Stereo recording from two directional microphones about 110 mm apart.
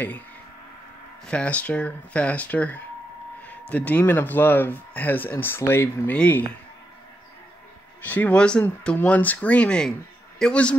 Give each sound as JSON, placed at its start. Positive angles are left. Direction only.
{"t": 1.2, "sound": "speech", "side_deg": 10}
{"t": 8.0, "sound": "speech", "side_deg": 15}